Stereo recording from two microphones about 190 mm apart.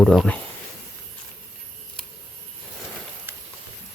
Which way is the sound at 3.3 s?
10° right (ahead or behind).